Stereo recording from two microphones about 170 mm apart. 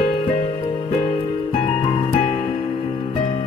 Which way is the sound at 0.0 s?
30° left (ahead or behind).